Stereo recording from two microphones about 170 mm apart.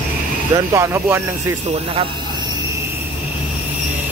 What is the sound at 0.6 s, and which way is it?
Speech, 15° right (ahead or behind).